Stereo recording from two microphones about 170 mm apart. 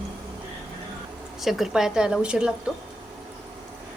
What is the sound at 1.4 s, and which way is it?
A woman's voice, centre (ahead or behind).